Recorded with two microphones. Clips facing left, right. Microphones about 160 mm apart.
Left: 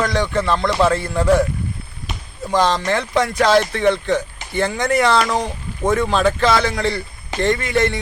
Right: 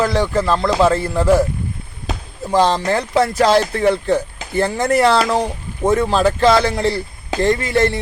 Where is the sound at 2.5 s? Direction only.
30° right (ahead or behind).